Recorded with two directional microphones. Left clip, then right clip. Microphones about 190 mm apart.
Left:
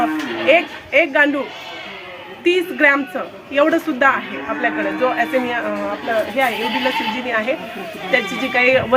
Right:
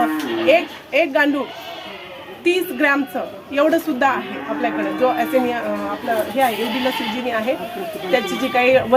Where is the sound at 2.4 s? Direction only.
15° right (ahead or behind).